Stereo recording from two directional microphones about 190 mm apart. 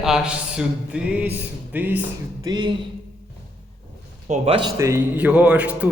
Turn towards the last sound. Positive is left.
turn(degrees=-5)  # may be behind; listen again after turning